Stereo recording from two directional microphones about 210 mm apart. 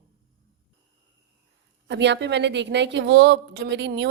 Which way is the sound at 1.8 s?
55° right (ahead or behind).